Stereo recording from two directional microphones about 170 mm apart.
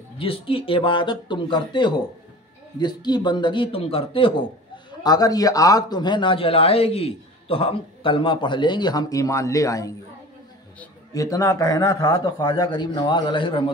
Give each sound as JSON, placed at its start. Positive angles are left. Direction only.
{"t": 0.2, "sound": "a man's voice", "side_deg": 30}
{"t": 11.1, "sound": "a man's voice", "side_deg": 20}